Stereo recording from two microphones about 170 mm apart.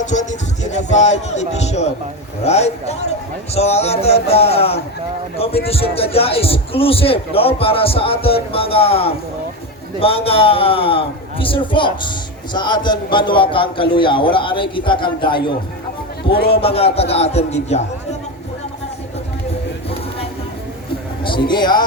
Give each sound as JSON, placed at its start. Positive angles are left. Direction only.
{"t": 0.0, "sound": "music", "side_deg": 45}
{"t": 0.9, "sound": "a man's voice", "side_deg": 40}
{"t": 16.5, "sound": "a man's voice", "side_deg": 35}
{"t": 21.2, "sound": "a man's voice", "side_deg": 30}